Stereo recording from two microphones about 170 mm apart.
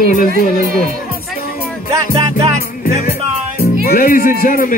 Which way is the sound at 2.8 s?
60° left (ahead or behind).